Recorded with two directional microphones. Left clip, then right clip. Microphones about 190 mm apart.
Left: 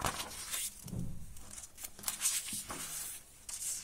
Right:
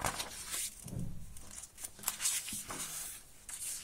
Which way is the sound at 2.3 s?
15° right (ahead or behind).